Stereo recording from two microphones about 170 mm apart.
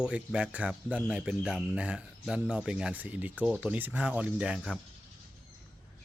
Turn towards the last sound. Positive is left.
turn(degrees=-5)  # may be behind; listen again after turning